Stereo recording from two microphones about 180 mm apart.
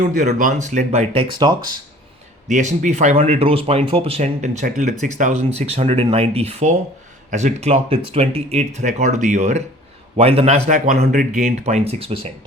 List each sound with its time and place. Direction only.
0.0 s speech: 45° right (ahead or behind); by 1.7 s 25° right (ahead or behind)
2.5 s speech: 40° right (ahead or behind)
10.9 s speech: 55° right (ahead or behind); by 12.3 s 30° right (ahead or behind)